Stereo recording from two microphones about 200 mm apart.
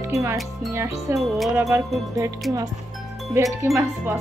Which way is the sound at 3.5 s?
15° right (ahead or behind).